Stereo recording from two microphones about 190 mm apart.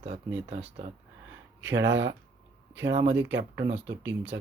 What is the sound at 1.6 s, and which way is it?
Speech, 70° right (ahead or behind).